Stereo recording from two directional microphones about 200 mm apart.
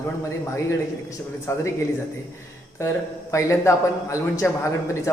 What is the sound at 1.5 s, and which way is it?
Speech, 10° left (ahead or behind).